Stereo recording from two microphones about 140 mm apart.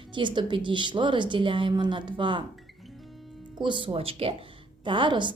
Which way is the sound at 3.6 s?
35° right (ahead or behind).